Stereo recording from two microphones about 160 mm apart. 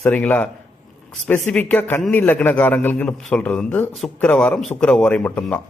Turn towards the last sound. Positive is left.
turn(degrees=10)  # may be behind; listen again after turning